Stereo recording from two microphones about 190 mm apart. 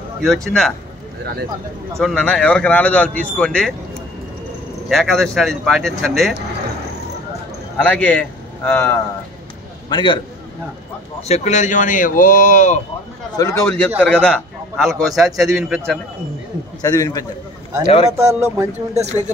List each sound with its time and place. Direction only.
0.2 s a man's voice: centre (ahead or behind)
2.0 s a man's voice: 5° left (ahead or behind)
4.8 s a man's voice: centre (ahead or behind)
7.7 s a man's voice: 5° left (ahead or behind)
9.8 s a man's voice: 25° left (ahead or behind)
11.2 s speech: 35° left (ahead or behind)
13.4 s a man's voice: 15° left (ahead or behind); by 16.0 s centre (ahead or behind)
16.8 s a man's voice: 20° left (ahead or behind)
17.8 s speech: 30° left (ahead or behind)
18.1 s speech: 15° right (ahead or behind)